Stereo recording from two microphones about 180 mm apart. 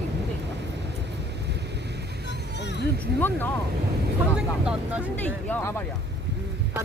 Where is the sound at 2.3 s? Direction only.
75° left (ahead or behind).